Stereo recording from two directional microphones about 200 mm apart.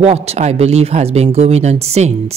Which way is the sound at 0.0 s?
30° right (ahead or behind).